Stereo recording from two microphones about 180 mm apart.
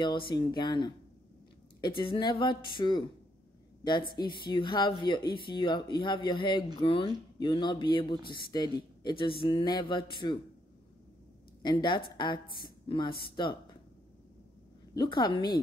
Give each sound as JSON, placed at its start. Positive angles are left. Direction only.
{"t": 0.0, "sound": "a man's voice", "side_deg": 25}
{"t": 2.0, "sound": "a man's voice", "side_deg": 25}
{"t": 11.6, "sound": "a man's voice", "side_deg": 25}
{"t": 15.0, "sound": "a man's voice", "side_deg": 25}